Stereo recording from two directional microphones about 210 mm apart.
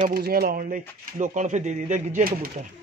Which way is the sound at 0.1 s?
45° right (ahead or behind).